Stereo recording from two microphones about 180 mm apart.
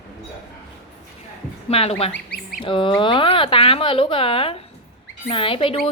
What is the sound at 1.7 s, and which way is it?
Speech, 35° left (ahead or behind).